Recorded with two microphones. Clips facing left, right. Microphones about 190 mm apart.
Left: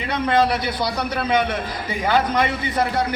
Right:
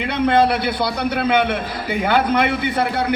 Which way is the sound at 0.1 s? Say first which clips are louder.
Right 3 dB; 60° right (ahead or behind).